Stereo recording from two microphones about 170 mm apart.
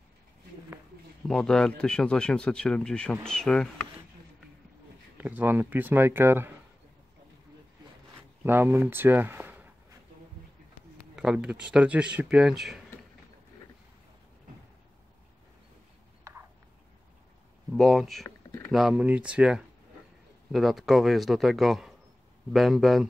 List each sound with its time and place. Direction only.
1.2 s speech: 5° left (ahead or behind)
5.1 s speech: 10° right (ahead or behind)
8.5 s speech: 15° right (ahead or behind)
11.1 s speech: 5° right (ahead or behind)
17.7 s speech: centre (ahead or behind)
18.2 s a sound: 20° left (ahead or behind)
18.7 s speech: centre (ahead or behind)